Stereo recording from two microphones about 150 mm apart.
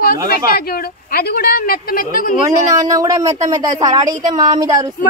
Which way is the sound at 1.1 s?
90° left.